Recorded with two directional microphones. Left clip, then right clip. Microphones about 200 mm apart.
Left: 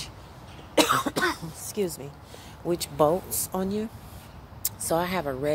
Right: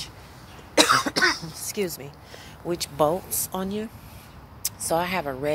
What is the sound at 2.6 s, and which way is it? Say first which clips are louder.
Speech: even; 5° left (ahead or behind).